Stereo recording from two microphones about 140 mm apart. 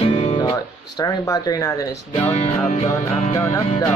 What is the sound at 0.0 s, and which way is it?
Music, 50° left (ahead or behind).